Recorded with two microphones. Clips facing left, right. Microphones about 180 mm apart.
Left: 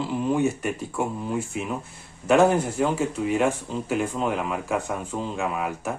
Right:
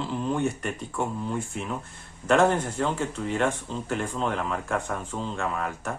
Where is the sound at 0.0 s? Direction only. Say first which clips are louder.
Left 4 dB; 5° left (ahead or behind).